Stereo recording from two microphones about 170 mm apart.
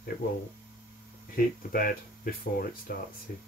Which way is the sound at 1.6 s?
55° left (ahead or behind).